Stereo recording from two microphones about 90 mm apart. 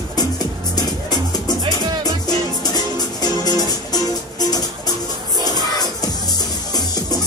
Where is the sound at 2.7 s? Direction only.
45° left (ahead or behind).